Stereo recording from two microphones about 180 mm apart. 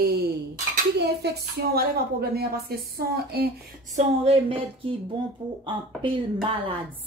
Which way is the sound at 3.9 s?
35° right (ahead or behind).